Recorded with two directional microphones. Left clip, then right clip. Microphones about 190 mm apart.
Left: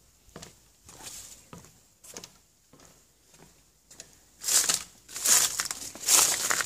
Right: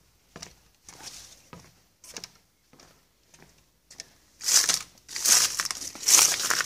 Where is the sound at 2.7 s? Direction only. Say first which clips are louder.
Right 1 dB; 50° right (ahead or behind).